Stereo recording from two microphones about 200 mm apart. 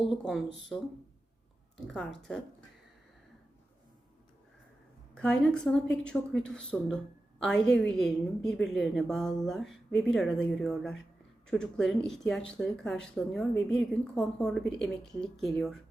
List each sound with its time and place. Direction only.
0.1 s speech: centre (ahead or behind)
1.9 s speech: centre (ahead or behind)
5.1 s speech: 5° left (ahead or behind)